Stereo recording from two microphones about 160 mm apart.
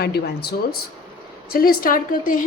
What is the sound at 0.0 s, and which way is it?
Speech, 90° left.